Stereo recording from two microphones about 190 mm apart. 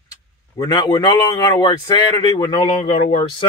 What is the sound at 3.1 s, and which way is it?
Speech, 35° left (ahead or behind).